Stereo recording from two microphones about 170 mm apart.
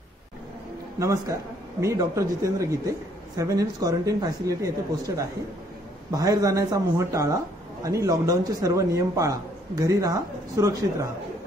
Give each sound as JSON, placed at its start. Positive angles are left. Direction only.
{"t": 0.9, "sound": "a man's voice", "side_deg": -20}